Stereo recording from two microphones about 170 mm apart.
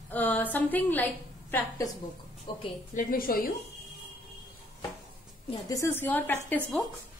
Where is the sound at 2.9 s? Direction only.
55° left (ahead or behind).